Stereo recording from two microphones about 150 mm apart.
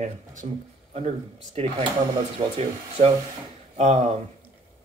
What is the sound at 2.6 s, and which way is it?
Speech, 45° right (ahead or behind).